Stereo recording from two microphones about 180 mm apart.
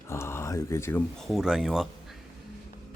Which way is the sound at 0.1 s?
15° left (ahead or behind).